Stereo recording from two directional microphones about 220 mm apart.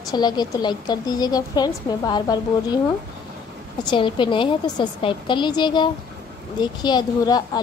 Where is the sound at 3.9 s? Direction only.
20° left (ahead or behind).